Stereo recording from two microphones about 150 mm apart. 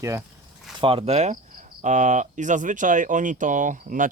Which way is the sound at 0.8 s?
40° right (ahead or behind).